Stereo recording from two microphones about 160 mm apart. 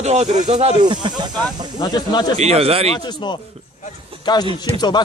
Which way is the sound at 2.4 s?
40° right (ahead or behind).